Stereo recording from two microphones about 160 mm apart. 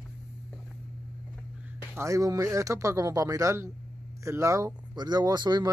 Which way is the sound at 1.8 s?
15° right (ahead or behind).